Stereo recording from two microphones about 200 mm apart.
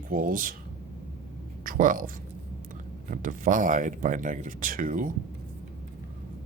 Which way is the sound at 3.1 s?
40° right (ahead or behind).